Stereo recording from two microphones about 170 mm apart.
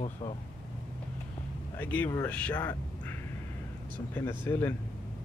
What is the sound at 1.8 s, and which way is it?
Speech, 10° left (ahead or behind).